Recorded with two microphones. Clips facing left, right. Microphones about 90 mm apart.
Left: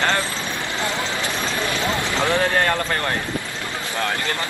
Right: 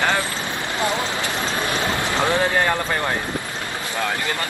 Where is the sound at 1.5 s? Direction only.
20° right (ahead or behind).